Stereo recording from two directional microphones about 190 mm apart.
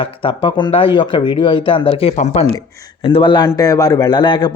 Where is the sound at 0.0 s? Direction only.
25° left (ahead or behind).